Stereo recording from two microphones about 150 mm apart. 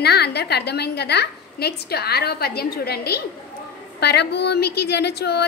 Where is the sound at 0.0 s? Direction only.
90° left.